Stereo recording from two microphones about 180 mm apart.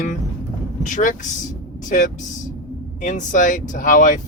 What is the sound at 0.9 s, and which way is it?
Speech, 45° left (ahead or behind).